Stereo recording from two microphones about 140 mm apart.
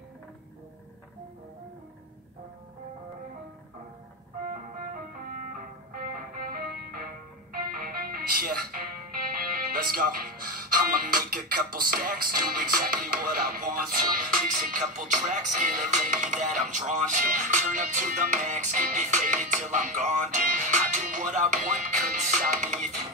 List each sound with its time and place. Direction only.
4.5 s music: 80° right
7.5 s speech: 90° right; by 22.8 s 65° right (ahead or behind)